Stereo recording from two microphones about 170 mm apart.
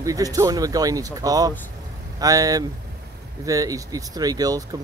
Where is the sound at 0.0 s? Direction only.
20° right (ahead or behind).